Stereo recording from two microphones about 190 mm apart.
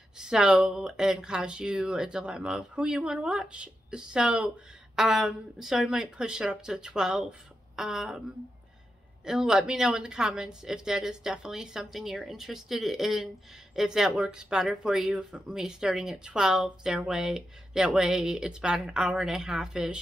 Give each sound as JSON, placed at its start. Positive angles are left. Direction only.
{"t": 0.2, "sound": "speech", "side_deg": -5}
{"t": 9.2, "sound": "speech", "side_deg": -5}